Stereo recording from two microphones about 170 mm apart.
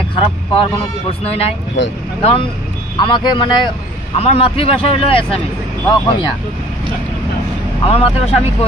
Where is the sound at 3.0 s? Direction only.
30° left (ahead or behind).